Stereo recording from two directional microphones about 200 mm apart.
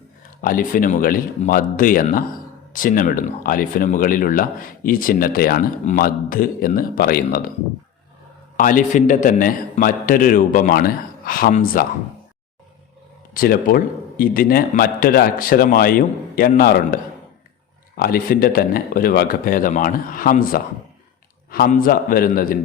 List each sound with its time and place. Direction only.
0.4 s speech: 45° left (ahead or behind)
8.5 s speech: 40° left (ahead or behind)
13.3 s speech: 45° left (ahead or behind)